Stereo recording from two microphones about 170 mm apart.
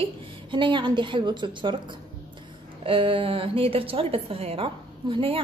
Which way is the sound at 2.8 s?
30° right (ahead or behind).